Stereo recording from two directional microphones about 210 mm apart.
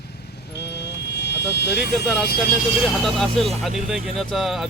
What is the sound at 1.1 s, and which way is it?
Vehicle, 55° left (ahead or behind).